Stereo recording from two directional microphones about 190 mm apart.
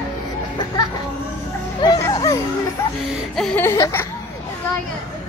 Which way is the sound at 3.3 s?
5° left (ahead or behind).